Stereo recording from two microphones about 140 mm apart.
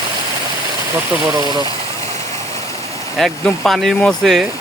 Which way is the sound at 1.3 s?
30° right (ahead or behind).